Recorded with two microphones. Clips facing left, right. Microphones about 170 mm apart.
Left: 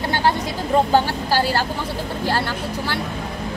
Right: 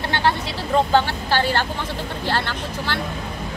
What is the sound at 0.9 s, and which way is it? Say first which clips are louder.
Speech: left 1 dB; 10° left (ahead or behind).